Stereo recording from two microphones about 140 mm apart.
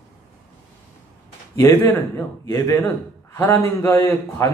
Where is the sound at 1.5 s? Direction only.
15° left (ahead or behind).